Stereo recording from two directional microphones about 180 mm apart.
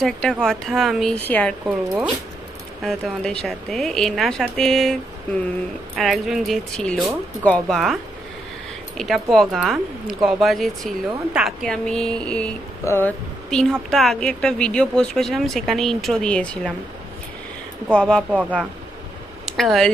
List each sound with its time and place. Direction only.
0.0 s a woman's voice: centre (ahead or behind)
2.8 s a woman's voice: 5° left (ahead or behind)
5.9 s a woman's voice: centre (ahead or behind)
17.9 s a woman's voice: 5° left (ahead or behind)
18.3 s speech: 10° right (ahead or behind)